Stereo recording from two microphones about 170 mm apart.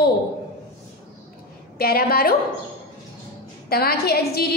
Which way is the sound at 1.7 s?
65° left (ahead or behind).